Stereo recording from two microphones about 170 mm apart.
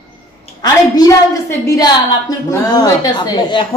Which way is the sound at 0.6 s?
20° left (ahead or behind).